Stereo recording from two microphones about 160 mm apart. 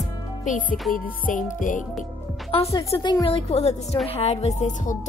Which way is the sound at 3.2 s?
35° left (ahead or behind).